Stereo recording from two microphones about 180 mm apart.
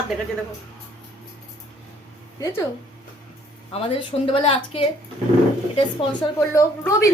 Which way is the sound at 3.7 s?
30° left (ahead or behind).